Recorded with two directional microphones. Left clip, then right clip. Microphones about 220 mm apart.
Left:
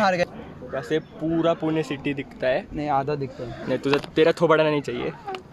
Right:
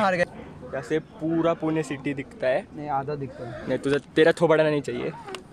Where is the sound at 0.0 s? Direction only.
5° right (ahead or behind).